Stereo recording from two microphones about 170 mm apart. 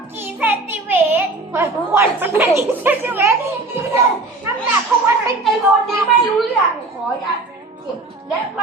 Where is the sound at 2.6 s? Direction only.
10° right (ahead or behind).